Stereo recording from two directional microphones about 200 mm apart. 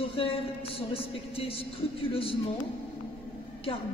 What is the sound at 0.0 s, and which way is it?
A man's voice, 25° left (ahead or behind).